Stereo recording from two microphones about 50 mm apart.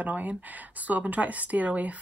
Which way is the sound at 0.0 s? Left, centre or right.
Right.